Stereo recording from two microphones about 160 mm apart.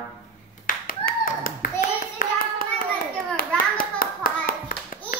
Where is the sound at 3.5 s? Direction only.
60° left (ahead or behind).